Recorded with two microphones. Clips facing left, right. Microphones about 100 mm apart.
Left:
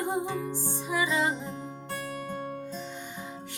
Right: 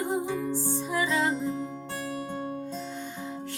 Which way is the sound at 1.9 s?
20° right (ahead or behind).